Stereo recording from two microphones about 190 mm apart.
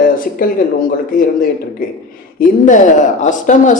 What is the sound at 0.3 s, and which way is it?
A man's voice, 45° left (ahead or behind).